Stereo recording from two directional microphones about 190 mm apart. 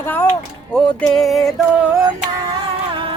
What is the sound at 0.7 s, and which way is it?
Music, centre (ahead or behind).